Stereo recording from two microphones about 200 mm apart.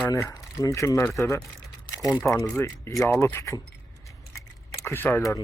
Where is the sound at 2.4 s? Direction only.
15° left (ahead or behind).